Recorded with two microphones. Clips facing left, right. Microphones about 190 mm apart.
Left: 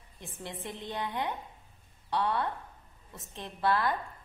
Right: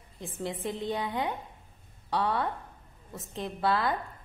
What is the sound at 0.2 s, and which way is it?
A woman's voice, 25° right (ahead or behind).